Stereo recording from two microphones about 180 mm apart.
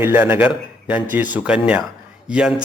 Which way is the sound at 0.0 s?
10° right (ahead or behind).